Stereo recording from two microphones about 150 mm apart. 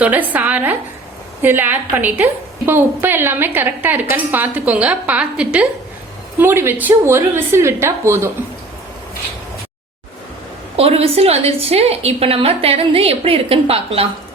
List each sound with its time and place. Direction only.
0.0 s a woman's voice: 10° right (ahead or behind)
10.8 s a woman's voice: 40° right (ahead or behind)